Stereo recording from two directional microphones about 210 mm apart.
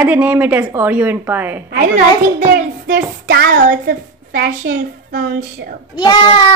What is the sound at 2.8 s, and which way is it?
A woman's voice, 45° right (ahead or behind).